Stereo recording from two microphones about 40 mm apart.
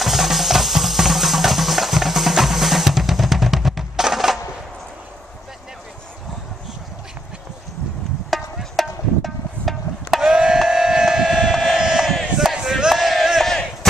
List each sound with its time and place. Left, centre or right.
0.0 s music: centre
8.3 s music: centre
10.1 s a sound: centre
10.7 s civil defense siren: centre
11.7 s a sound: centre
12.9 s battle cry: centre
13.4 s battle cry: centre